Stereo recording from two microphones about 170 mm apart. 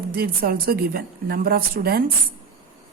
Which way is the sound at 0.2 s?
60° right (ahead or behind).